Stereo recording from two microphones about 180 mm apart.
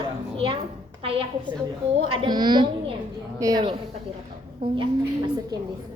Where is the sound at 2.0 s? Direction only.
30° right (ahead or behind).